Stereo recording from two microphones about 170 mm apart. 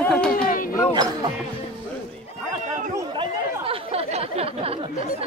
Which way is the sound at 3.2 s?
35° right (ahead or behind).